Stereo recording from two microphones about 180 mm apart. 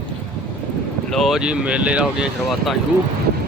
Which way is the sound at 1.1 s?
Centre (ahead or behind).